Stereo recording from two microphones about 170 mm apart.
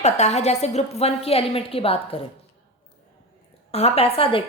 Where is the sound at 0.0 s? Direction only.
40° left (ahead or behind).